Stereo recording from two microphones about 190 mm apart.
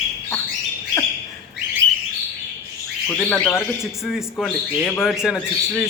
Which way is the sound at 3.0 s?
10° left (ahead or behind).